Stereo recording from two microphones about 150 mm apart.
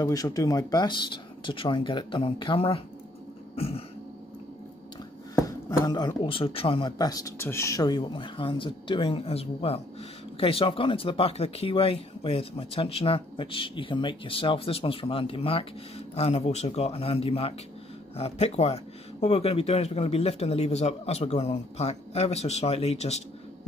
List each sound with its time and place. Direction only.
0.0 s speech: 25° left (ahead or behind)
3.5 s a sound: 40° left (ahead or behind)
5.3 s speech: 20° left (ahead or behind); by 23.2 s 45° left (ahead or behind)